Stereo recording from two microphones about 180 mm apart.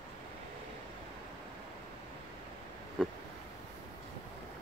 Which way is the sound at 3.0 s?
Centre (ahead or behind).